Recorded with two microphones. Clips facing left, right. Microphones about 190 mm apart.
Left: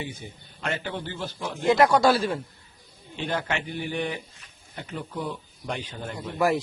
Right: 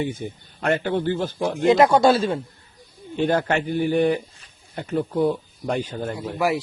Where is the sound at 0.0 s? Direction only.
55° right (ahead or behind).